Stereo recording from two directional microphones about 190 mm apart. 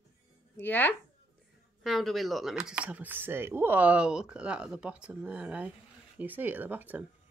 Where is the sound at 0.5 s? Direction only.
10° left (ahead or behind).